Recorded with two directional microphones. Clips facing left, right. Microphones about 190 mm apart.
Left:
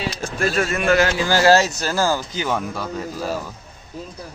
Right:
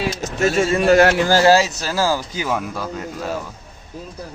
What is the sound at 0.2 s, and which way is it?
Speech, 20° right (ahead or behind).